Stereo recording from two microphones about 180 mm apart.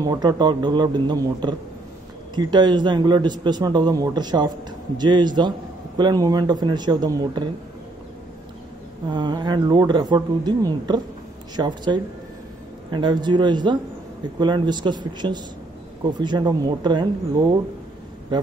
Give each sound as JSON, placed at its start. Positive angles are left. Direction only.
{"t": 0.0, "sound": "a man's voice", "side_deg": -20}
{"t": 9.1, "sound": "a man's voice", "side_deg": -25}